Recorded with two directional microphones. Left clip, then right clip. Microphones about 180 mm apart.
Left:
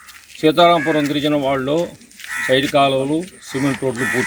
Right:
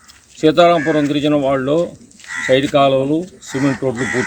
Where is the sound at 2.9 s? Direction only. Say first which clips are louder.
Right 3 dB; centre (ahead or behind).